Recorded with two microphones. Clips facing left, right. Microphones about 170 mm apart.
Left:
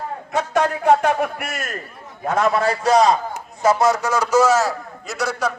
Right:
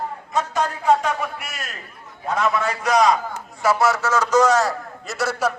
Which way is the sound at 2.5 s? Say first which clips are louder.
Left 5 dB; 35° left (ahead or behind).